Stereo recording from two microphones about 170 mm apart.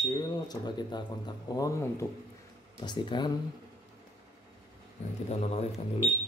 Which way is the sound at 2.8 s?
25° left (ahead or behind).